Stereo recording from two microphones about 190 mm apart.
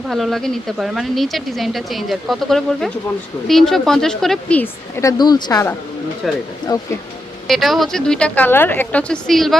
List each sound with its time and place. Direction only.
0.1 s speech: centre (ahead or behind); by 5.7 s 20° left (ahead or behind)
6.2 s speech: centre (ahead or behind)
6.7 s speech: 20° left (ahead or behind)
7.4 s speech: centre (ahead or behind)